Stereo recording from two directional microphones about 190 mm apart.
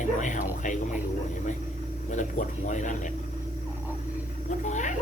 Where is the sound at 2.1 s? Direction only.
40° left (ahead or behind).